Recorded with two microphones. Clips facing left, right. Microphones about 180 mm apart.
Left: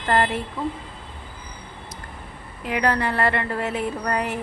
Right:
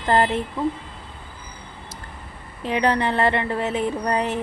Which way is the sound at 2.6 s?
25° right (ahead or behind).